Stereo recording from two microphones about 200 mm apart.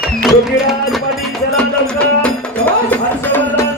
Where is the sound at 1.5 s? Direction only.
5° left (ahead or behind).